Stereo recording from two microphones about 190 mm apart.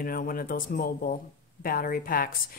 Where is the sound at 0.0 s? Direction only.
50° left (ahead or behind).